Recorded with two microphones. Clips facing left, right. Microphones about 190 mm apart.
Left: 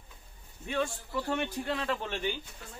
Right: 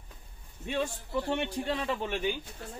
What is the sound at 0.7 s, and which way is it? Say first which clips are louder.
A man's voice: even; 20° right (ahead or behind).